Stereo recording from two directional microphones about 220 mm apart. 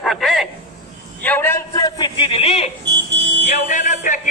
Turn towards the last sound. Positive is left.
turn(degrees=35)  # may be behind; listen again after turning